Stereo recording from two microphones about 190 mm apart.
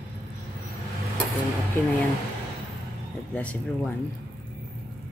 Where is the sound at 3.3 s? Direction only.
10° left (ahead or behind).